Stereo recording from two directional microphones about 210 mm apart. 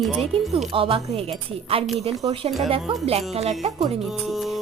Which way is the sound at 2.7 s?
30° right (ahead or behind).